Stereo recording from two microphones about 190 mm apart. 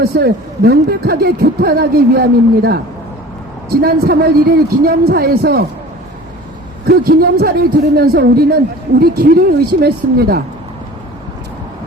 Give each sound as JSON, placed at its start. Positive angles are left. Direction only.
{"t": 0.0, "sound": "speech", "side_deg": -55}
{"t": 6.8, "sound": "speech", "side_deg": -55}